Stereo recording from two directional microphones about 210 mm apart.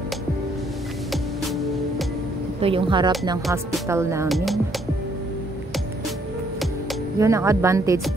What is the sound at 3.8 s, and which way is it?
Speech, 15° right (ahead or behind).